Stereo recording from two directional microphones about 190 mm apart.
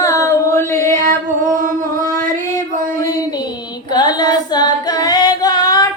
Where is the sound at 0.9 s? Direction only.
45° right (ahead or behind).